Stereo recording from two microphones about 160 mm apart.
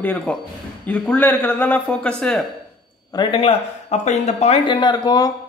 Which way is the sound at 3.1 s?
35° left (ahead or behind).